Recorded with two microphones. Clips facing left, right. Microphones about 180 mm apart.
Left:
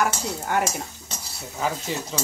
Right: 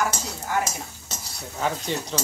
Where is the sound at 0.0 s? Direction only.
65° left (ahead or behind).